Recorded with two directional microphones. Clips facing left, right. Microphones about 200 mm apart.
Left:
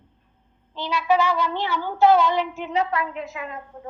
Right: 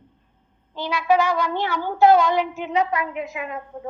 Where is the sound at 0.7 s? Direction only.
50° right (ahead or behind).